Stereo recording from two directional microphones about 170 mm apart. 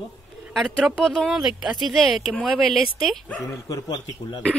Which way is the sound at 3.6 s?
20° left (ahead or behind).